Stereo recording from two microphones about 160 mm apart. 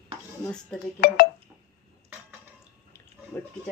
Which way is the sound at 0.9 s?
75° left (ahead or behind).